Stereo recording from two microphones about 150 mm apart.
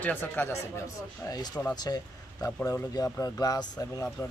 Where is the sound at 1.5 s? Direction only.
5° left (ahead or behind).